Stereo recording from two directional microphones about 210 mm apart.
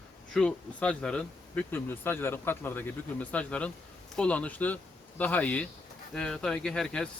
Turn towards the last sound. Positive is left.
turn(degrees=5)  # may be behind; listen again after turning